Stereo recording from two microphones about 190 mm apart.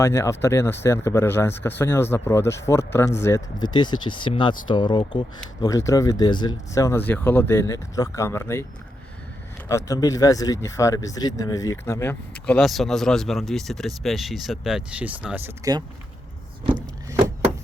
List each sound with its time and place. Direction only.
0.0 s speech: 15° left (ahead or behind)
9.6 s speech: 15° left (ahead or behind); by 15.7 s 10° right (ahead or behind)
17.1 s vehicle: 15° right (ahead or behind)